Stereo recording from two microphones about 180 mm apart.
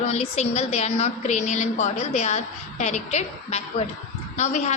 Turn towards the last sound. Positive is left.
turn(degrees=40)  # may be behind; listen again after turning